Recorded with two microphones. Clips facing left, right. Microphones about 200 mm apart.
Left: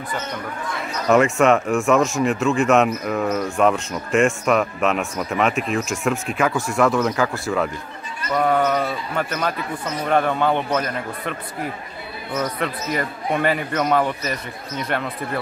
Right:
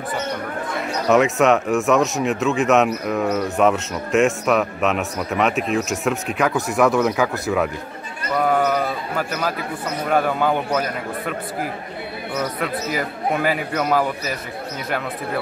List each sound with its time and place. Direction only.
1.0 s a man's voice: centre (ahead or behind)
12.4 s a man's voice: 5° right (ahead or behind)